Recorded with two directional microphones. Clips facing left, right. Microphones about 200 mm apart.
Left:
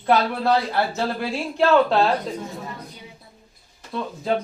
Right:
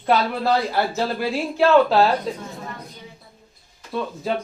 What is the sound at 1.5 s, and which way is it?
Speech, 5° right (ahead or behind).